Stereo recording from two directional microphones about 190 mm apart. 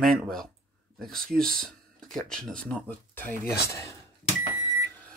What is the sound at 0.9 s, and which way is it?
Speech, centre (ahead or behind).